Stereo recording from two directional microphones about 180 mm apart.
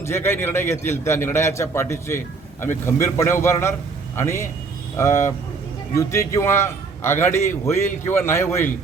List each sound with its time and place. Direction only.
0.0 s a man's voice: 15° left (ahead or behind)